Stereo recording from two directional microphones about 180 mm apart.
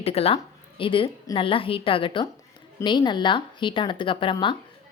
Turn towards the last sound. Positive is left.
turn(degrees=25)  # may be behind; listen again after turning